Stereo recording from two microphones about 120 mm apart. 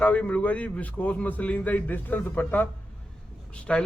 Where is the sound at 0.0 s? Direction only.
10° left (ahead or behind).